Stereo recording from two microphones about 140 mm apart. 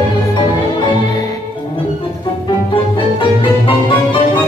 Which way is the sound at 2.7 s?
40° left (ahead or behind).